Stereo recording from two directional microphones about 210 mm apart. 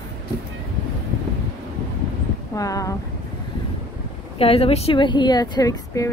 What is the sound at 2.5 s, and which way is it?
Speech, 15° left (ahead or behind).